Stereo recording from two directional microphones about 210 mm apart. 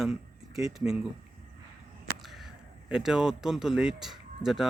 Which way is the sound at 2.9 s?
5° right (ahead or behind).